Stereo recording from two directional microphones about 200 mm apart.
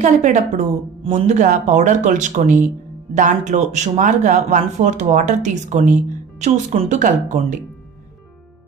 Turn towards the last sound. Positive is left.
turn(degrees=-40)  # may be behind; listen again after turning